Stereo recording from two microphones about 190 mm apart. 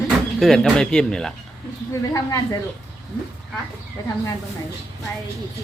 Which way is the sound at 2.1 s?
15° left (ahead or behind).